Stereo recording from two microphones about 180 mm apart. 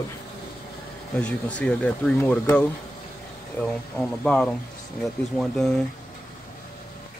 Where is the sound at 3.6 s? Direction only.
5° left (ahead or behind).